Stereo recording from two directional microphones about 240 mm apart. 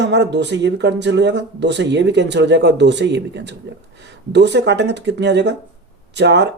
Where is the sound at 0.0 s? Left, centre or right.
Right.